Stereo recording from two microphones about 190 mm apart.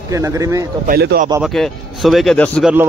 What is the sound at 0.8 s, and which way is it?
Speech, 55° right (ahead or behind).